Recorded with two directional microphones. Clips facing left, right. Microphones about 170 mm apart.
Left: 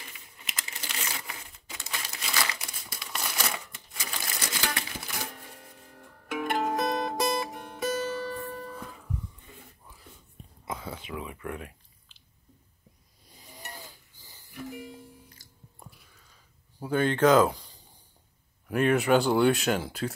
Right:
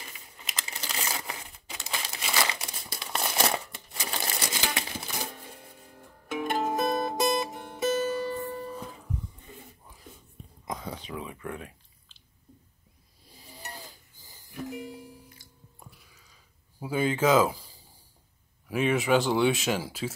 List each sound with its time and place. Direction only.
0.5 s crumpling: 35° right (ahead or behind); by 4.8 s 20° right (ahead or behind)
4.8 s music: 25° right (ahead or behind)
5.8 s music: 10° right (ahead or behind)
6.6 s music: 5° right (ahead or behind)
7.5 s music: 20° right (ahead or behind)
11.1 s a sound: 25° right (ahead or behind)
13.7 s snoring: 40° right (ahead or behind)
16.8 s speech: 5° right (ahead or behind)